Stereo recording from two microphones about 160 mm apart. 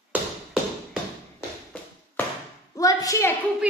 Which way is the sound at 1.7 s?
10° left (ahead or behind).